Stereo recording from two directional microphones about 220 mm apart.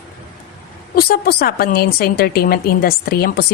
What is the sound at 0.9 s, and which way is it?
A woman's voice, 45° left (ahead or behind).